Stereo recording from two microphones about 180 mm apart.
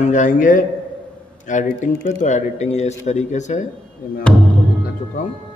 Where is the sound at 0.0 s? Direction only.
45° left (ahead or behind).